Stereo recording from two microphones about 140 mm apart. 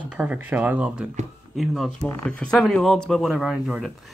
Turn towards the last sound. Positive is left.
turn(degrees=-5)  # may be behind; listen again after turning